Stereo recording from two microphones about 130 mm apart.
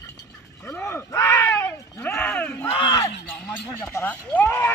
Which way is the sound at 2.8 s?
35° left (ahead or behind).